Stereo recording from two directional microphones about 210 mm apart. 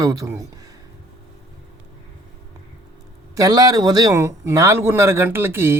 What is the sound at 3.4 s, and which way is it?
Speech, 15° right (ahead or behind).